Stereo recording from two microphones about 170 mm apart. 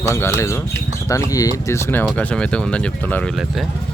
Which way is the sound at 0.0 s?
15° left (ahead or behind).